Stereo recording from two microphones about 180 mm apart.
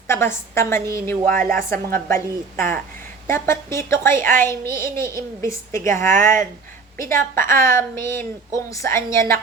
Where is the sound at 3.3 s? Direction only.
15° left (ahead or behind).